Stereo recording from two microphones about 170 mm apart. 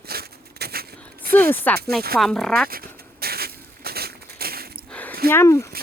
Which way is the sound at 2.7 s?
60° right (ahead or behind).